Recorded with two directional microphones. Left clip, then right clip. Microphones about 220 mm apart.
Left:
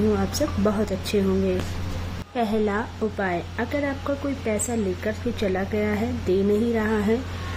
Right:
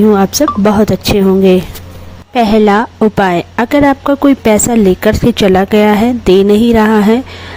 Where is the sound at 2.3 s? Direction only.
40° right (ahead or behind).